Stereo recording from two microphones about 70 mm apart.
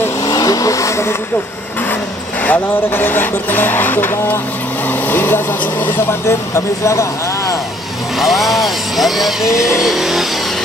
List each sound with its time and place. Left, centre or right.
0.2 s vehicle: left
2.4 s speech: left
6.2 s speech: left
8.2 s speech: centre
9.8 s vehicle: centre